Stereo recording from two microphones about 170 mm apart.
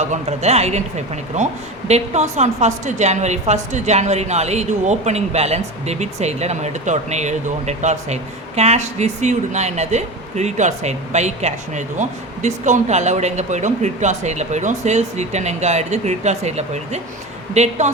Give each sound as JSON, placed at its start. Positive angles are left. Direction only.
{"t": 0.0, "sound": "a woman's voice", "side_deg": -40}